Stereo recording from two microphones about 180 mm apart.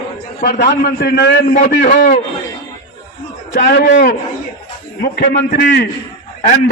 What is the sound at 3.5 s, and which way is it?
Speech, 65° left (ahead or behind).